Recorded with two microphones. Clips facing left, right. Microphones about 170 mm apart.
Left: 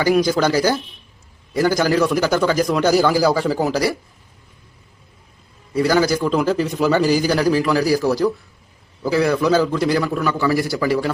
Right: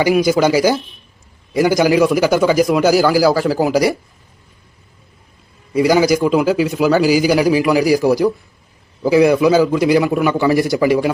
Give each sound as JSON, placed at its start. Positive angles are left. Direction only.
{"t": 0.1, "sound": "a man's voice", "side_deg": -10}
{"t": 5.7, "sound": "a man's voice", "side_deg": -15}